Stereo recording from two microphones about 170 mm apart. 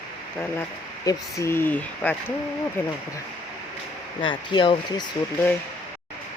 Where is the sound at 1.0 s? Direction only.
15° left (ahead or behind).